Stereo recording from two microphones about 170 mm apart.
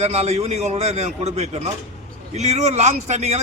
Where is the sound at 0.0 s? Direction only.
40° right (ahead or behind).